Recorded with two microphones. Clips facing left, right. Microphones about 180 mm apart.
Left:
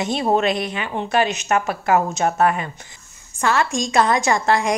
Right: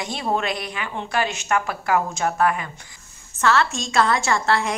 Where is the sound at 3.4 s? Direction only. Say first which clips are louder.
Left 1 dB; 15° left (ahead or behind).